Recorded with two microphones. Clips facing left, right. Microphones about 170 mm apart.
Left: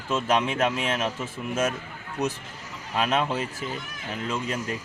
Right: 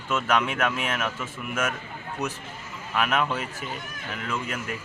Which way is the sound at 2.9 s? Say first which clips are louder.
Left 1 dB; 30° left (ahead or behind).